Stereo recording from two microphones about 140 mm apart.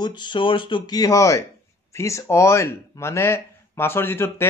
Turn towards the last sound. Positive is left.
turn(degrees=15)  # may be behind; listen again after turning